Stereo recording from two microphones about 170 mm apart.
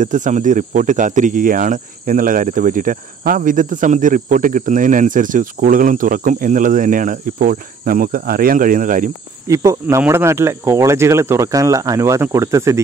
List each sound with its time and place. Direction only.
0.0 s speech: 50° right (ahead or behind)
9.5 s speech: 20° right (ahead or behind)